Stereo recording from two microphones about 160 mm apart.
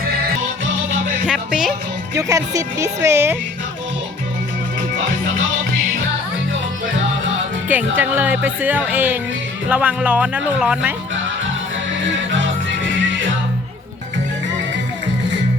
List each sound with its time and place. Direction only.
1.3 s music: 5° right (ahead or behind)
2.1 s speech: 20° right (ahead or behind)
7.7 s speech: 10° right (ahead or behind)